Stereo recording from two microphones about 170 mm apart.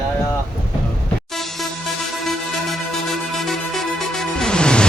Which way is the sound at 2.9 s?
Centre (ahead or behind).